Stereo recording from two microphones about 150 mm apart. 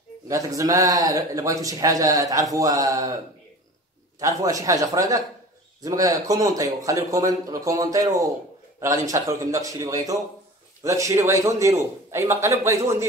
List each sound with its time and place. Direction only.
0.3 s speech: 20° right (ahead or behind)
4.2 s speech: 20° right (ahead or behind)